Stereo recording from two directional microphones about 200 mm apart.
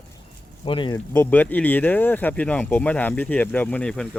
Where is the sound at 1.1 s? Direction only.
10° left (ahead or behind).